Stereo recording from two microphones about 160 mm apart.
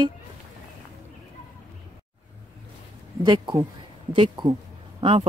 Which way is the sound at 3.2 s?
25° right (ahead or behind).